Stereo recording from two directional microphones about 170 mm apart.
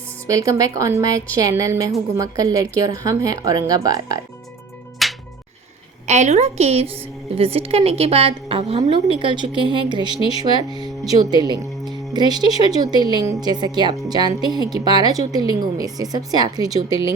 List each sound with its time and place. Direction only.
0.3 s a woman's voice: 20° right (ahead or behind)
5.0 s music: centre (ahead or behind)
6.1 s a woman's voice: 40° right (ahead or behind); by 16.8 s 20° right (ahead or behind)